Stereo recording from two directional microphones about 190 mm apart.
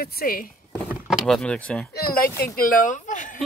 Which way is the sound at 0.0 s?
50° left (ahead or behind).